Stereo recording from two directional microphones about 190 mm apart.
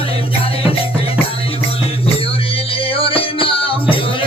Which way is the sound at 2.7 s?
30° left (ahead or behind).